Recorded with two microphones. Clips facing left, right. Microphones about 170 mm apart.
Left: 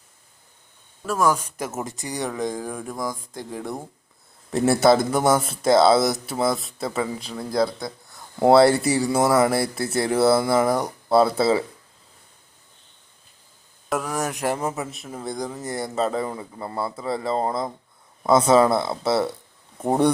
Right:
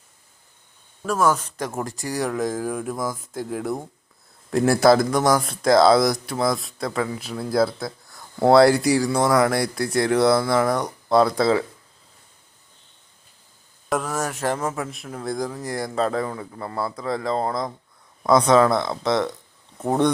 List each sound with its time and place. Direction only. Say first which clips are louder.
1.0 s speech: right 1 dB; 10° left (ahead or behind)
7.2 s speech: right 3 dB; 5° right (ahead or behind)
13.9 s speech: right 1 dB; 10° left (ahead or behind)
16.2 s a man's voice: even; 15° left (ahead or behind)
16.9 s a man's voice: even; 5° left (ahead or behind)